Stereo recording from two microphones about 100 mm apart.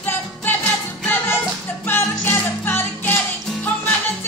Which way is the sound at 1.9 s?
20° left (ahead or behind).